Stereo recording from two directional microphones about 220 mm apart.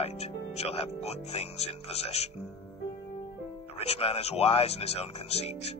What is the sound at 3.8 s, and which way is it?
Speech, 30° left (ahead or behind).